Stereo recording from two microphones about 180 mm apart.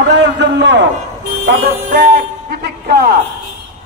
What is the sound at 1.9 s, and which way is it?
Music, 50° right (ahead or behind).